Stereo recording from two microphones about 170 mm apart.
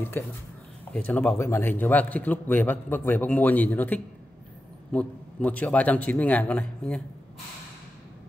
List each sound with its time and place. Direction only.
0.9 s a man's voice: 10° left (ahead or behind)